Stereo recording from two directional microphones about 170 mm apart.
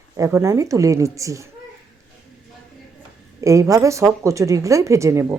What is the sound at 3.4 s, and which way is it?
Speech, 20° right (ahead or behind).